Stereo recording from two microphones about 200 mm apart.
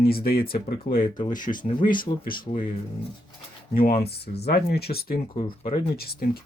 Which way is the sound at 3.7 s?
50° left (ahead or behind).